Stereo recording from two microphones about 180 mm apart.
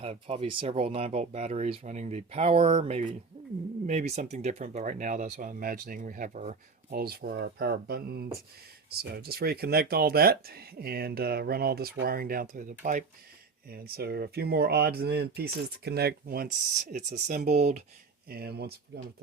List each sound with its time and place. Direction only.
0.0 s speech: 35° right (ahead or behind)
13.7 s speech: 55° right (ahead or behind)
16.9 s speech: 45° right (ahead or behind)
18.3 s speech: 60° right (ahead or behind)